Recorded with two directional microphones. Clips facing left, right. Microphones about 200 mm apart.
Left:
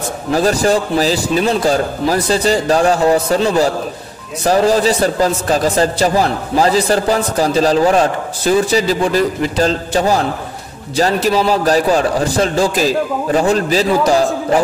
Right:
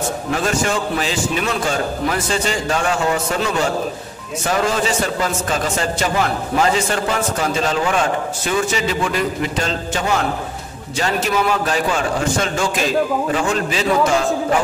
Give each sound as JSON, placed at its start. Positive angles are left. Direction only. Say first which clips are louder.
{"t": 0.3, "sound": "a man's voice", "louder": "left 8 dB", "side_deg": 35}